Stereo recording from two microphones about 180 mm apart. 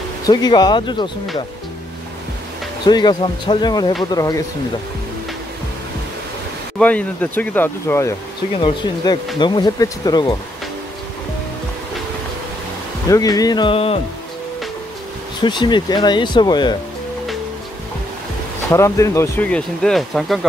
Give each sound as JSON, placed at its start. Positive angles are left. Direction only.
{"t": 0.2, "sound": "speech", "side_deg": 25}
{"t": 2.8, "sound": "speech", "side_deg": 25}
{"t": 6.8, "sound": "speech", "side_deg": 10}
{"t": 8.5, "sound": "speech", "side_deg": 25}
{"t": 13.1, "sound": "speech", "side_deg": 20}
{"t": 15.4, "sound": "speech", "side_deg": 25}
{"t": 18.7, "sound": "speech", "side_deg": 15}